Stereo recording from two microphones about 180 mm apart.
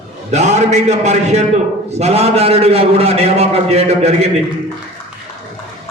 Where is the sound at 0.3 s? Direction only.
40° right (ahead or behind).